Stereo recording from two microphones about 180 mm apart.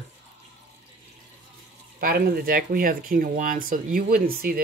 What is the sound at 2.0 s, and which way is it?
Speech, 55° right (ahead or behind).